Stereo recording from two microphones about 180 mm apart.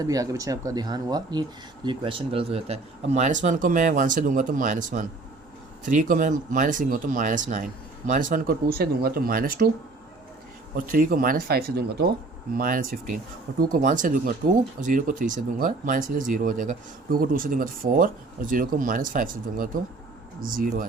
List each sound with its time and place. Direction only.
0.0 s speech: 20° right (ahead or behind); by 9.6 s 55° right (ahead or behind)
10.9 s speech: 50° right (ahead or behind)
12.5 s speech: 50° right (ahead or behind)